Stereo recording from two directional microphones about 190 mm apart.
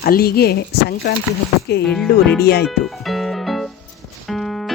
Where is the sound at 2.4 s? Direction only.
60° left (ahead or behind).